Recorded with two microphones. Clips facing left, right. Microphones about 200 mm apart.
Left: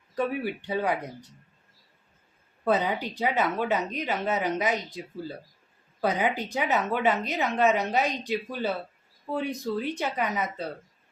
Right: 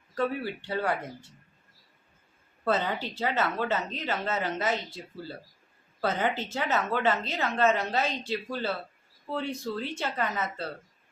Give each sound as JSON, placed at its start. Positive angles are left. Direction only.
{"t": 0.1, "sound": "a woman's voice", "side_deg": 15}
{"t": 2.6, "sound": "a woman's voice", "side_deg": 15}